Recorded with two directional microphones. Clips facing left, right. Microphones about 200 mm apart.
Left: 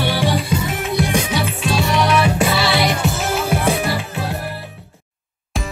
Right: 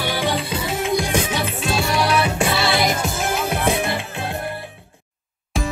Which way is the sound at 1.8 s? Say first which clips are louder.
Left 3 dB; 30° right (ahead or behind).